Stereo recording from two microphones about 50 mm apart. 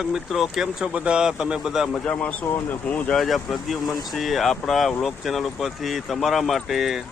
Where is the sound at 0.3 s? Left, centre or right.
Centre.